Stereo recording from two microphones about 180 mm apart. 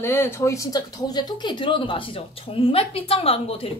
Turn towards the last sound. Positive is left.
turn(degrees=30)  # may be behind; listen again after turning